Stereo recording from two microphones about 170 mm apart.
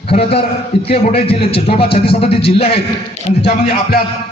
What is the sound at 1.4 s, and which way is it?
Speech, 75° left (ahead or behind).